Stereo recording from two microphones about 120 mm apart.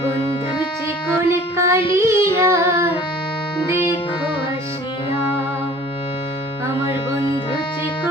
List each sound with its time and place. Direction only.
1.3 s child singing: 25° right (ahead or behind)